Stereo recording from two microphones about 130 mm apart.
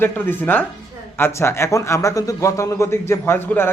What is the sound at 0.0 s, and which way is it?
A man's voice, 15° left (ahead or behind).